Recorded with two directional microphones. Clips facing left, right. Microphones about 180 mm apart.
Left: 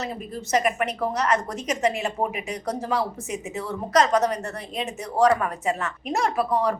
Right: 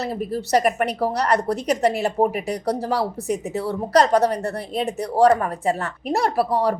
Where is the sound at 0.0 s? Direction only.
35° right (ahead or behind).